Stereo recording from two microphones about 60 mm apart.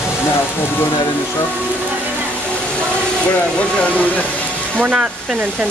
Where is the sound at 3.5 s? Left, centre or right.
Left.